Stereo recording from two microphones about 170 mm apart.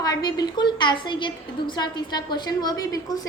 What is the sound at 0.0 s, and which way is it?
A woman's voice, 25° left (ahead or behind).